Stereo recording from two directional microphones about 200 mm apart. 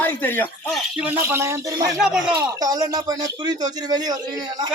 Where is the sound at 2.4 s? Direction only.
20° right (ahead or behind).